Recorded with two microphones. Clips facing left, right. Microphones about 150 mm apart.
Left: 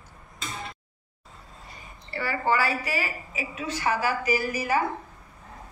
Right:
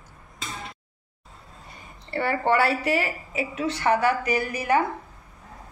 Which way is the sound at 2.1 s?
60° right (ahead or behind).